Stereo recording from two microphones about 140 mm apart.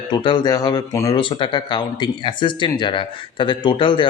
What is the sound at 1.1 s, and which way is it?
Speech, 35° left (ahead or behind).